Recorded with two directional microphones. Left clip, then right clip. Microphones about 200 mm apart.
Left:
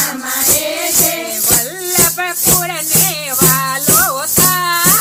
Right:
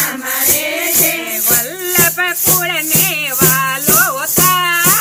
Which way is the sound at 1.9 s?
10° right (ahead or behind).